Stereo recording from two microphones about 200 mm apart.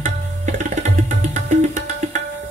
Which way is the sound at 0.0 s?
40° right (ahead or behind).